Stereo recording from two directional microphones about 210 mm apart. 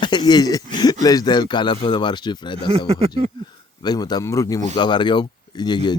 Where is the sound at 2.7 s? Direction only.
30° right (ahead or behind).